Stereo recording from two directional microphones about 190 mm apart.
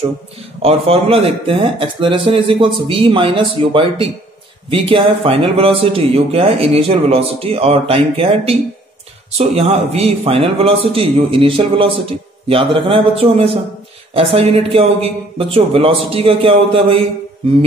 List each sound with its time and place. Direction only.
0.6 s a man's voice: 30° right (ahead or behind)